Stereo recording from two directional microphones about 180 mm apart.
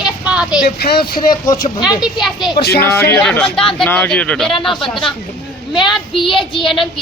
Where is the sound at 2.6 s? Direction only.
60° left (ahead or behind).